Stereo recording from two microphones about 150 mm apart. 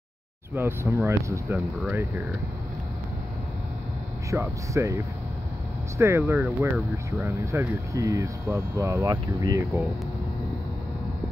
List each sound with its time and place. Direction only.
0.6 s speech: 15° right (ahead or behind)
4.3 s speech: 20° right (ahead or behind)